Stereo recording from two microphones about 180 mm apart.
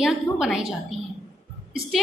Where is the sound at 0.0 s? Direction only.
Centre (ahead or behind).